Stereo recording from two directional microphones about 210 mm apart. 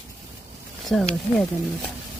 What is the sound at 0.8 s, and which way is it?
Speech, centre (ahead or behind).